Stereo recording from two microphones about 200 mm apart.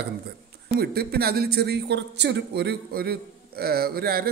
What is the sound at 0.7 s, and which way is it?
Speech, 50° right (ahead or behind).